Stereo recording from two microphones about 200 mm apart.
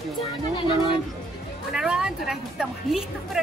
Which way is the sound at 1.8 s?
5° right (ahead or behind).